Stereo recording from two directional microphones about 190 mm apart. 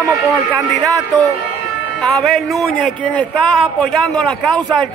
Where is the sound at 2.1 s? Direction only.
Centre (ahead or behind).